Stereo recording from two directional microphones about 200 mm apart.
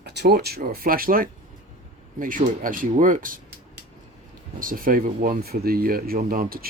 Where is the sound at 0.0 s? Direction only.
55° right (ahead or behind).